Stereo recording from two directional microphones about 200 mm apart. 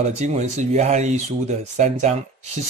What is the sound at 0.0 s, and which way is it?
Speech, 35° right (ahead or behind).